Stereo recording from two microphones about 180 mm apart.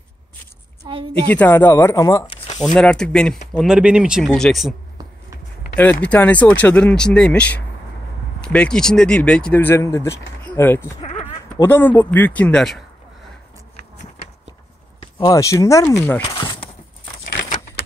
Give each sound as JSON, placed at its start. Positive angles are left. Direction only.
{"t": 0.8, "sound": "a woman's voice", "side_deg": -25}
{"t": 1.3, "sound": "speech", "side_deg": 10}
{"t": 2.6, "sound": "speech", "side_deg": 5}
{"t": 6.0, "sound": "speech", "side_deg": 10}
{"t": 11.0, "sound": "bleat", "side_deg": 35}
{"t": 11.6, "sound": "speech", "side_deg": 10}
{"t": 15.1, "sound": "speech", "side_deg": 20}
{"t": 17.5, "sound": "typewriter", "side_deg": 35}